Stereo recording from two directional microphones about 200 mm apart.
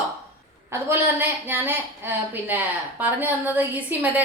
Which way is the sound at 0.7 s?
10° right (ahead or behind).